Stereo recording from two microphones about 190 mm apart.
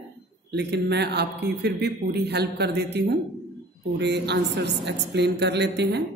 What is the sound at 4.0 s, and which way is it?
Speech, 65° right (ahead or behind).